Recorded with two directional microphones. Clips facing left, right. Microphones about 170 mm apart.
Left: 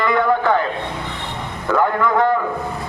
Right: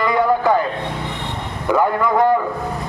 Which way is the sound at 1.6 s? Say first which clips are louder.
Right 1 dB; 15° right (ahead or behind).